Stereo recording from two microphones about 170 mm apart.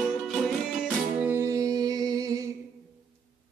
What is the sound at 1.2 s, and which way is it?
Music, 15° right (ahead or behind).